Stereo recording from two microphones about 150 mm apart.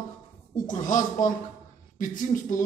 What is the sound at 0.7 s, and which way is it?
A man's voice, 60° left (ahead or behind).